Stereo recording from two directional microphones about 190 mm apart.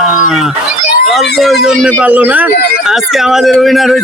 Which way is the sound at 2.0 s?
5° right (ahead or behind).